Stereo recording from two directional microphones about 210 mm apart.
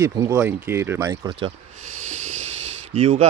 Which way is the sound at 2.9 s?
30° right (ahead or behind).